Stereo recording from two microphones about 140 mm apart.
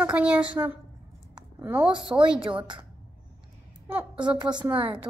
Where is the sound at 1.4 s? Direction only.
10° right (ahead or behind).